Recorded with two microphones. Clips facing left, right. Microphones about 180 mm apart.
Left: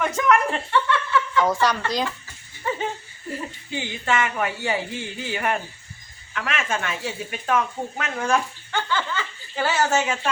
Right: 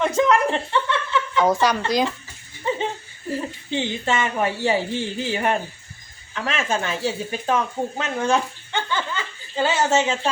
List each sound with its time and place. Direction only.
0.0 s speech: 25° right (ahead or behind)
3.7 s a woman's voice: 25° right (ahead or behind)